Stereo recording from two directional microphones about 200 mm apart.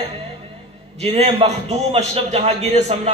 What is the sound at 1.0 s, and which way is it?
A man's voice, 30° right (ahead or behind).